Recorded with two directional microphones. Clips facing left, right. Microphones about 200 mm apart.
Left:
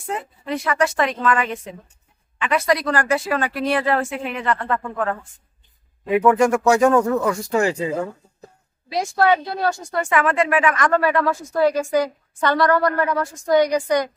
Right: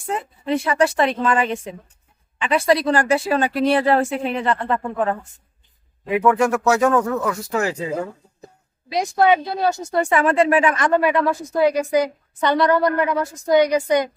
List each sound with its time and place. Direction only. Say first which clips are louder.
0.5 s a woman's voice: right 3 dB; 30° right (ahead or behind)
6.2 s speech: left 1 dB; 5° right (ahead or behind)
6.9 s speech: left 2 dB; 10° left (ahead or behind)
7.3 s speech: left 3 dB; 5° right (ahead or behind)
8.4 s a woman's voice: right 1 dB; 15° right (ahead or behind)
10.9 s a woman's voice: right 1 dB; 20° right (ahead or behind)